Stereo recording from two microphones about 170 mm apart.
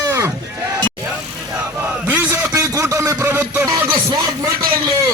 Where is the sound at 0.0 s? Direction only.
20° right (ahead or behind).